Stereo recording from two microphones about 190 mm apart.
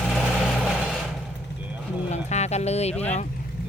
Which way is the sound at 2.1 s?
35° left (ahead or behind).